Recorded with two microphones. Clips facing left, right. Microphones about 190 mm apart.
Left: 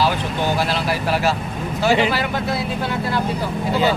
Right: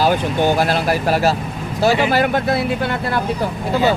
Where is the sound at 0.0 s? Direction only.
50° right (ahead or behind).